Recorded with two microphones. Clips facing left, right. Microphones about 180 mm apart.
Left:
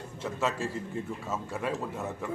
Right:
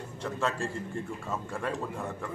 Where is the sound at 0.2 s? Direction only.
5° left (ahead or behind).